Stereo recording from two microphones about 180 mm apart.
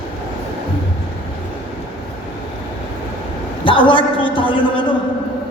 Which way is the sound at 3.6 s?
30° left (ahead or behind).